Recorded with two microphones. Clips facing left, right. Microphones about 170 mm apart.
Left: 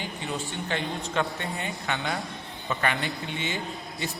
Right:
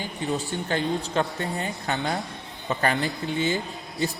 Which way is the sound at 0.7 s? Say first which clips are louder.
Right 5 dB; 35° right (ahead or behind).